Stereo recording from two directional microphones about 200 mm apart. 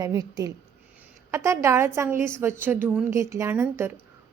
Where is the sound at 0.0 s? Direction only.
15° right (ahead or behind).